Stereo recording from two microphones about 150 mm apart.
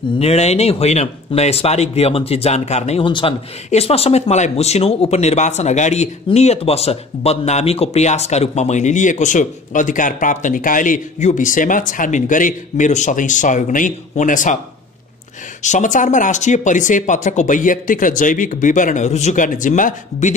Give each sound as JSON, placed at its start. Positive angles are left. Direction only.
{"t": 0.2, "sound": "speech", "side_deg": 45}
{"t": 3.1, "sound": "speech", "side_deg": 35}
{"t": 15.6, "sound": "speech", "side_deg": 55}